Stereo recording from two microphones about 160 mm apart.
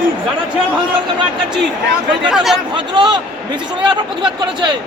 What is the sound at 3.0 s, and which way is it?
Speech, 30° right (ahead or behind).